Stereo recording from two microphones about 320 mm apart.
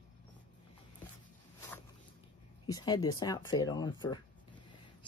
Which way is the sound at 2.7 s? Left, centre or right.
Centre.